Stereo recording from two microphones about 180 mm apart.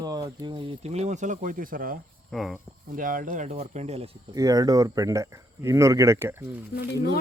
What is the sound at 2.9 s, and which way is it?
Speech, 50° right (ahead or behind).